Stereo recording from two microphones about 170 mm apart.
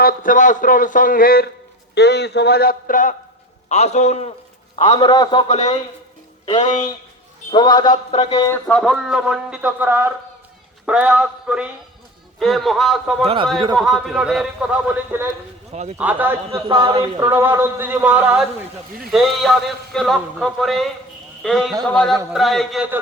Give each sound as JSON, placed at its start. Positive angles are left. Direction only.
{"t": 0.0, "sound": "a man's voice", "side_deg": 55}
{"t": 2.0, "sound": "a man's voice", "side_deg": 80}
{"t": 4.9, "sound": "a man's voice", "side_deg": 25}
{"t": 5.5, "sound": "a man's voice", "side_deg": 40}
{"t": 7.5, "sound": "a man's voice", "side_deg": 25}
{"t": 8.5, "sound": "a man's voice", "side_deg": 5}
{"t": 13.2, "sound": "a man's voice", "side_deg": -30}
{"t": 13.7, "sound": "a man's voice", "side_deg": 0}
{"t": 15.7, "sound": "a man's voice", "side_deg": -40}
{"t": 16.0, "sound": "a man's voice", "side_deg": -10}
{"t": 16.5, "sound": "speech", "side_deg": -25}
{"t": 17.2, "sound": "a man's voice", "side_deg": -15}